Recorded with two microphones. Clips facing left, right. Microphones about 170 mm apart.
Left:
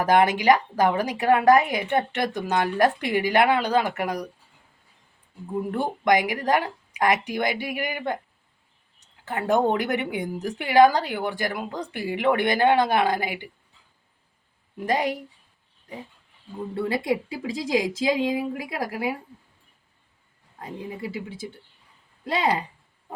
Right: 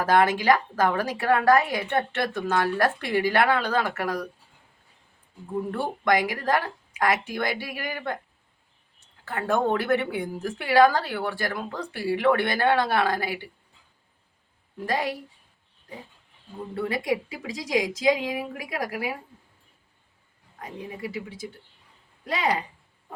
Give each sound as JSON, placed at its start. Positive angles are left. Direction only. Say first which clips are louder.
{"t": 0.0, "sound": "a woman's voice", "louder": "left 2 dB", "side_deg": 20}
{"t": 5.5, "sound": "a woman's voice", "louder": "left 2 dB", "side_deg": 15}
{"t": 9.2, "sound": "a woman's voice", "louder": "left 3 dB", "side_deg": 20}
{"t": 14.8, "sound": "a woman's voice", "louder": "left 3 dB", "side_deg": 20}
{"t": 16.7, "sound": "a woman's voice", "louder": "left 2 dB", "side_deg": 25}
{"t": 20.6, "sound": "a woman's voice", "louder": "left 2 dB", "side_deg": 25}